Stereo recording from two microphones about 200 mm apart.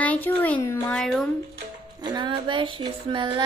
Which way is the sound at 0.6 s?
10° left (ahead or behind).